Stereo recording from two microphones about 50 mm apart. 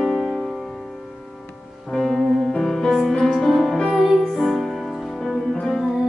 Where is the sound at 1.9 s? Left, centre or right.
Centre.